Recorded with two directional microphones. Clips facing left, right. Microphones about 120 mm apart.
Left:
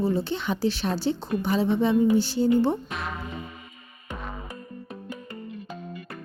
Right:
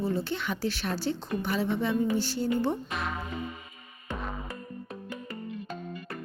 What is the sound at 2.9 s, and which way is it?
Speech, centre (ahead or behind).